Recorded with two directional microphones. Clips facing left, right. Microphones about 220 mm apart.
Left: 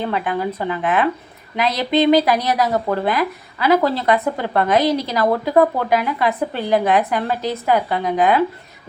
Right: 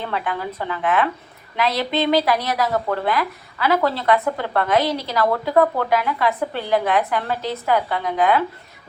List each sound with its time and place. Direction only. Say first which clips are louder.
0.0 s speech: left 4 dB; 15° left (ahead or behind)